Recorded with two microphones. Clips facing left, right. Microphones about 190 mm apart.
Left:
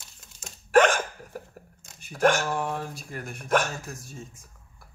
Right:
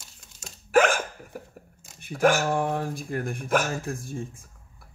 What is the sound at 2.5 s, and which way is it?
Speech, 55° right (ahead or behind).